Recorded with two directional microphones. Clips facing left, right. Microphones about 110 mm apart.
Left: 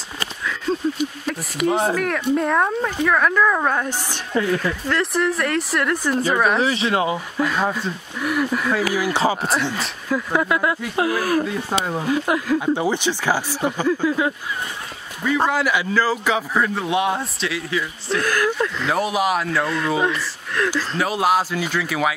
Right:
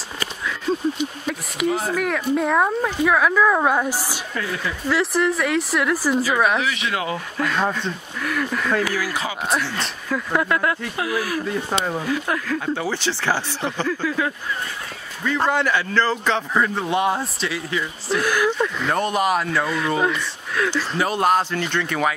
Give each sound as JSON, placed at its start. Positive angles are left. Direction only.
{"t": 0.7, "sound": "a sound", "side_deg": -5}
{"t": 1.2, "sound": "speech", "side_deg": 0}
{"t": 1.7, "sound": "speech", "side_deg": 30}
{"t": 2.0, "sound": "a man's voice", "side_deg": 0}
{"t": 6.6, "sound": "speech", "side_deg": 30}
{"t": 7.3, "sound": "speech", "side_deg": 5}
{"t": 9.1, "sound": "speech", "side_deg": 30}
{"t": 9.4, "sound": "a man's voice", "side_deg": 0}
{"t": 11.0, "sound": "speech", "side_deg": 40}
{"t": 12.0, "sound": "a man's voice", "side_deg": 20}